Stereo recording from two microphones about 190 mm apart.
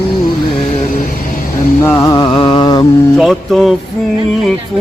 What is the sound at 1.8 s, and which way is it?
Mantra, 15° left (ahead or behind).